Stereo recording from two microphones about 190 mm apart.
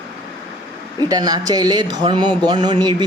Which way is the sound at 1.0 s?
20° right (ahead or behind).